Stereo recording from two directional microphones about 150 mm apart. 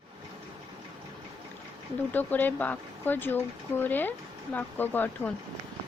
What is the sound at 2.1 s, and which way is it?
Speech, 10° left (ahead or behind).